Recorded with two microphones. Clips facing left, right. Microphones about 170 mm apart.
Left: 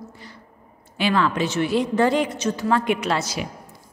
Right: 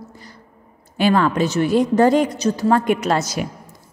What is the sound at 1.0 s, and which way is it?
A woman's voice, 45° right (ahead or behind).